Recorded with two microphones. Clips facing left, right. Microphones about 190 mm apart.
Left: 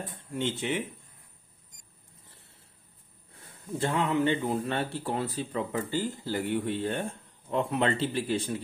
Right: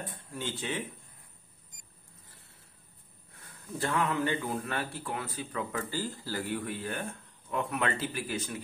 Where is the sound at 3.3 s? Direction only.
20° left (ahead or behind).